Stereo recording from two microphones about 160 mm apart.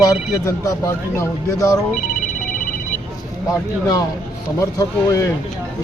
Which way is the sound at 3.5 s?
25° left (ahead or behind).